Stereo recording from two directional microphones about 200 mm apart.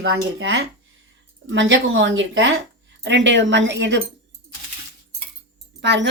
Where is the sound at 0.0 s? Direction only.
80° right.